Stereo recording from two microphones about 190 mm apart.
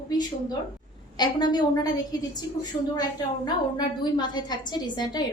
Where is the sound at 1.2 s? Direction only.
20° left (ahead or behind).